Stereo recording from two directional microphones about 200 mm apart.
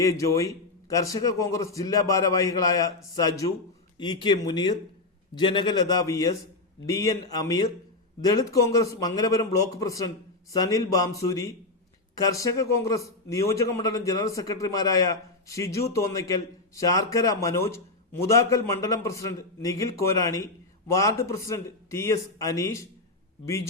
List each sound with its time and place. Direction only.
0.0 s a man's voice: 15° left (ahead or behind)